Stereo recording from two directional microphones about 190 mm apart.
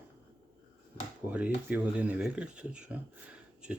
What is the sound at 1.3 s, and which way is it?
Speech, 10° right (ahead or behind).